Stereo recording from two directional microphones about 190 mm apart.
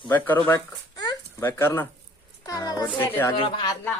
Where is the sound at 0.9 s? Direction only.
20° left (ahead or behind).